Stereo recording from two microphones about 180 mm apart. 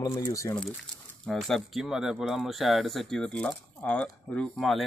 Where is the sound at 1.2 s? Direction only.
Centre (ahead or behind).